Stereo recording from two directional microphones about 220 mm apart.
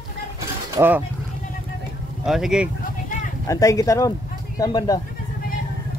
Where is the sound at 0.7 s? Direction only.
10° right (ahead or behind).